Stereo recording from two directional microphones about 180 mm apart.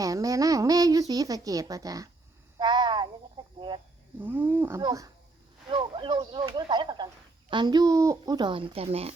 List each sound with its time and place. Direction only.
0.0 s a woman's voice: 20° right (ahead or behind)
2.6 s a sound: 25° right (ahead or behind)
3.4 s speech: 30° right (ahead or behind)
4.2 s a woman's voice: 10° right (ahead or behind); by 9.1 s 35° right (ahead or behind)